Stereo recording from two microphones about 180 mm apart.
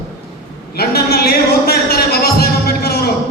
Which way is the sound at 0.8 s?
60° left (ahead or behind).